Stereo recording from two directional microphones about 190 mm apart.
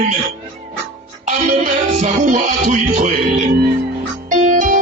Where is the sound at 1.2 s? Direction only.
40° right (ahead or behind).